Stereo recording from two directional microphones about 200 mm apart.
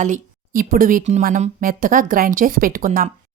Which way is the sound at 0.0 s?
40° right (ahead or behind).